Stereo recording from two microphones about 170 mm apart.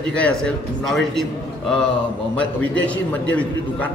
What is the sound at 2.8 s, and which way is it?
A man's voice, 10° left (ahead or behind).